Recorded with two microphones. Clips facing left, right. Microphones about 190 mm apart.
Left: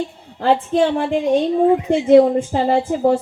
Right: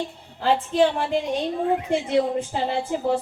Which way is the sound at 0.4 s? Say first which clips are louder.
Left 4 dB; 55° left (ahead or behind).